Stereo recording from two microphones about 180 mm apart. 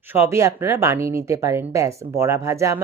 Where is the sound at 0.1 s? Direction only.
15° right (ahead or behind).